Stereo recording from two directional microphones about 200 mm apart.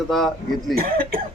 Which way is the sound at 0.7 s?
45° right (ahead or behind).